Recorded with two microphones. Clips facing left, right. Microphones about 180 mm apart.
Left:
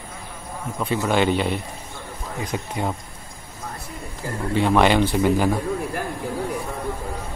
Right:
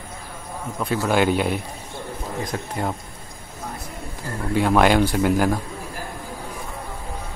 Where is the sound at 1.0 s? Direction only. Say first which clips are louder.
Right 1 dB; 5° right (ahead or behind).